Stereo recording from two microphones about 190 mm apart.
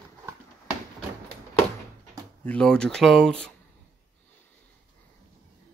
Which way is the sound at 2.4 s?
5° left (ahead or behind).